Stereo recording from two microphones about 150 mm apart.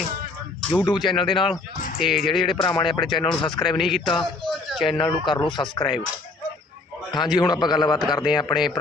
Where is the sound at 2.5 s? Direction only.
35° left (ahead or behind).